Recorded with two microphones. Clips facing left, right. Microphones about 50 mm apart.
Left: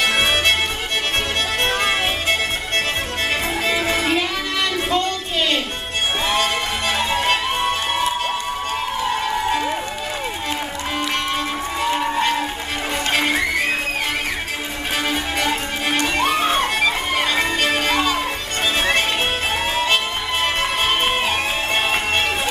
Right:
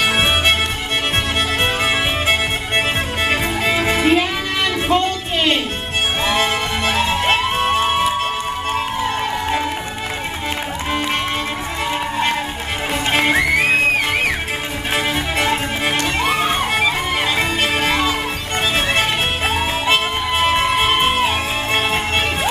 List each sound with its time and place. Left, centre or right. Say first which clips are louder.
0.0 s music: right 2 dB; centre
1.6 s music: even; centre
4.8 s a sound: right 3 dB; right
6.2 s music: right 2 dB; centre
16.2 s music: left 1 dB; centre
19.9 s music: right 3 dB; centre